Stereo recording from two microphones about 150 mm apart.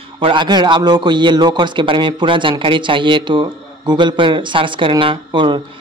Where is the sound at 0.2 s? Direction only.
35° right (ahead or behind).